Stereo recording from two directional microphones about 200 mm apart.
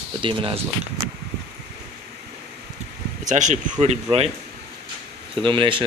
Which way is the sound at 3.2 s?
35° right (ahead or behind).